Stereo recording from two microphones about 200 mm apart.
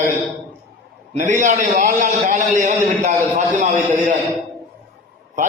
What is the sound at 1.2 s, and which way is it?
A man's voice, 40° right (ahead or behind).